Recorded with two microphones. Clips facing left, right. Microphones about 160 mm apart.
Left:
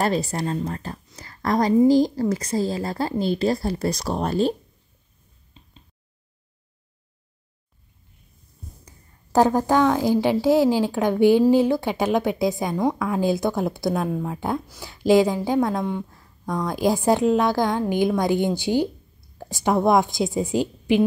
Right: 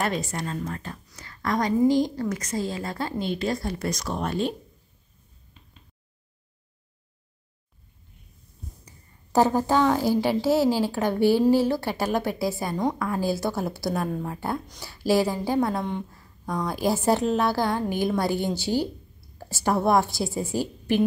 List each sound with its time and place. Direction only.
0.0 s a woman's voice: 35° left (ahead or behind)
9.3 s a woman's voice: 15° left (ahead or behind)
16.1 s a sound: 5° right (ahead or behind)
16.7 s a woman's voice: 15° left (ahead or behind)